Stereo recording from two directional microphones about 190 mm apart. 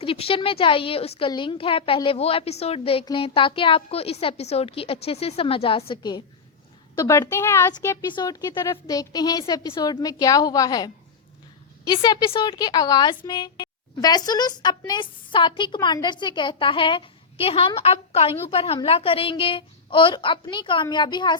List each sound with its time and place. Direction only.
0.0 s a woman's voice: 30° left (ahead or behind)